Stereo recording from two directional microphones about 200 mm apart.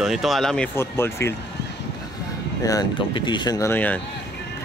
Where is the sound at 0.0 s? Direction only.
Centre (ahead or behind).